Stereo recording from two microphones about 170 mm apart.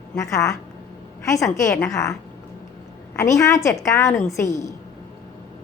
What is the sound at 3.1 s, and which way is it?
A woman's voice, 20° left (ahead or behind).